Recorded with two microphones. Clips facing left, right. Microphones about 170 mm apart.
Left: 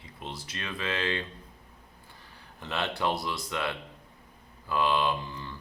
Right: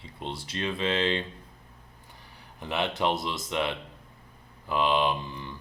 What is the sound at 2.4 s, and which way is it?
Speech, 15° right (ahead or behind).